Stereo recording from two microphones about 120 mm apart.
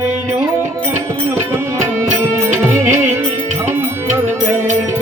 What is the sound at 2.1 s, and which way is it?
Music, 20° right (ahead or behind).